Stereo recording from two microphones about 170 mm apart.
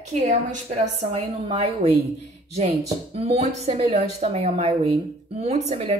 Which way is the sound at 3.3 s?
40° right (ahead or behind).